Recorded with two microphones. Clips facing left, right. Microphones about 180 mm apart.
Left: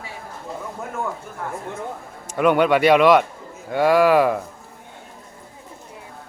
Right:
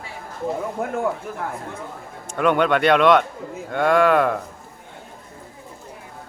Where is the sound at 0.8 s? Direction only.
60° right (ahead or behind).